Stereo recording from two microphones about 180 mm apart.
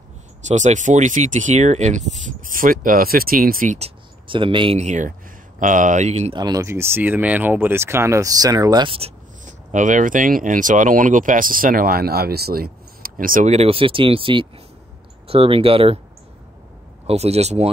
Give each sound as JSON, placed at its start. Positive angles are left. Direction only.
{"t": 0.5, "sound": "speech", "side_deg": -40}
{"t": 6.3, "sound": "speech", "side_deg": -20}
{"t": 17.0, "sound": "speech", "side_deg": -35}